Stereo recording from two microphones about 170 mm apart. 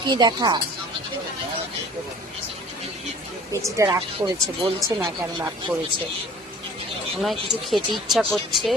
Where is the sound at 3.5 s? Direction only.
20° right (ahead or behind).